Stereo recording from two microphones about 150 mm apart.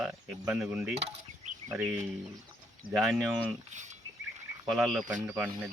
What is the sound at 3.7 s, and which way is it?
Speech, 55° right (ahead or behind).